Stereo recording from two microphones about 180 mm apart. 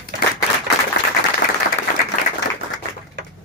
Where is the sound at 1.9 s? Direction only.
50° left (ahead or behind).